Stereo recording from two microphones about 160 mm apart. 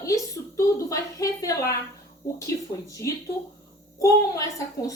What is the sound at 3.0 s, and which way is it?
A woman's voice, 20° left (ahead or behind).